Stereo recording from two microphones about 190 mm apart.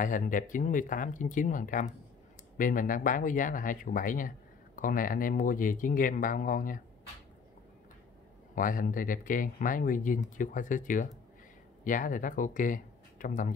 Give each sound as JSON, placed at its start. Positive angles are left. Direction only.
{"t": 0.0, "sound": "speech", "side_deg": 45}
{"t": 8.5, "sound": "speech", "side_deg": 45}